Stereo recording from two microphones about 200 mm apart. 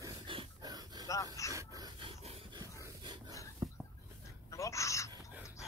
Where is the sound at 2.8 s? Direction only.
20° right (ahead or behind).